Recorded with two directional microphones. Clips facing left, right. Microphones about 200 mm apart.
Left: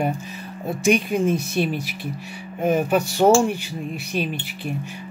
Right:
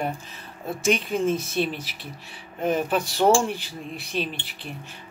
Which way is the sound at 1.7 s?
50° left (ahead or behind).